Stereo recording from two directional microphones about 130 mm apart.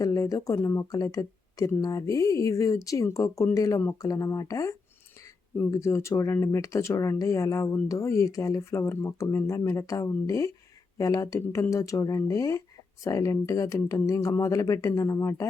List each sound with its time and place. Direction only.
0.0 s speech: 25° left (ahead or behind)